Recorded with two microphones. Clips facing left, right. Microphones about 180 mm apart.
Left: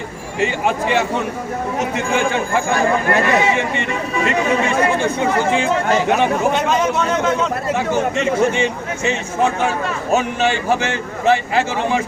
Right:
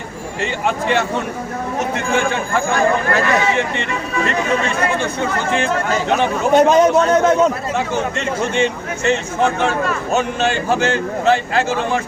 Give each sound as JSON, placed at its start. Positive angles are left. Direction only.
{"t": 0.9, "sound": "speech", "side_deg": 10}
{"t": 3.1, "sound": "speech", "side_deg": 20}
{"t": 6.5, "sound": "a man's voice", "side_deg": -40}
{"t": 8.5, "sound": "speech", "side_deg": 10}